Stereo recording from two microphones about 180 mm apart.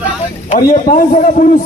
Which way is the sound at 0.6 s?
50° left (ahead or behind).